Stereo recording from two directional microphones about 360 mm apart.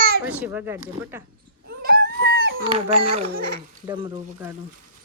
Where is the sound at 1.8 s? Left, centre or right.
Right.